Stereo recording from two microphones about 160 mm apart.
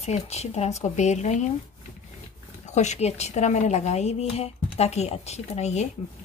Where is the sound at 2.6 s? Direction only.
45° left (ahead or behind).